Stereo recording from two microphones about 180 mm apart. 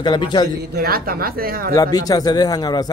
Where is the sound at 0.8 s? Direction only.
55° right (ahead or behind).